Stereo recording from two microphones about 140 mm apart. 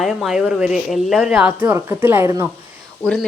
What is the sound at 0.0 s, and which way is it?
A woman's voice, centre (ahead or behind).